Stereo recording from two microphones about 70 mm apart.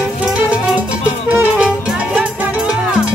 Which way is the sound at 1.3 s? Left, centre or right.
Centre.